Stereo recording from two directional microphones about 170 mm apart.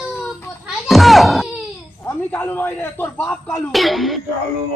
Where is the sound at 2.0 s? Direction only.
10° left (ahead or behind).